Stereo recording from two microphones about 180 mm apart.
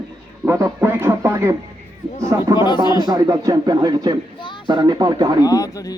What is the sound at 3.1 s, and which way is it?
Speech, 20° right (ahead or behind).